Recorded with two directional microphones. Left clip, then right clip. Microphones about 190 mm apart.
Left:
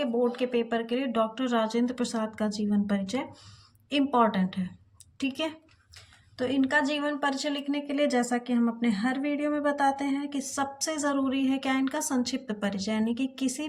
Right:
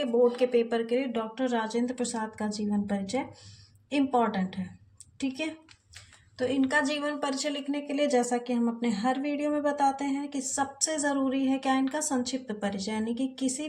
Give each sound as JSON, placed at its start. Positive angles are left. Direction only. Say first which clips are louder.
{"t": 0.0, "sound": "speech", "louder": "right 3 dB", "side_deg": 5}
{"t": 6.3, "sound": "a woman's voice", "louder": "left 1 dB", "side_deg": 20}